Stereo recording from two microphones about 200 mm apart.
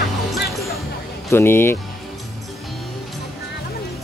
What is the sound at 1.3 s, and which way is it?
Speech, 10° left (ahead or behind).